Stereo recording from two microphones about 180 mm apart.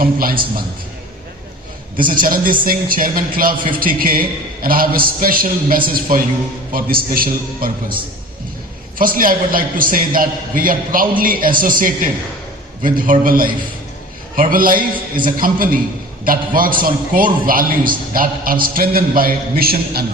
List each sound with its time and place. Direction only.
0.0 s a man's voice: 55° right (ahead or behind)
2.0 s a man's voice: 50° right (ahead or behind)
9.0 s a man's voice: 50° right (ahead or behind)